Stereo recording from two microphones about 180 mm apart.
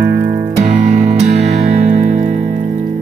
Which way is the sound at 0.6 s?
45° right (ahead or behind).